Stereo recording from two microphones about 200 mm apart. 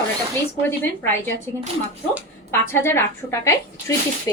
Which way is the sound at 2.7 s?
10° left (ahead or behind).